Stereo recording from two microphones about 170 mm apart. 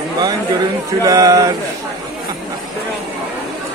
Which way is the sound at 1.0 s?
20° right (ahead or behind).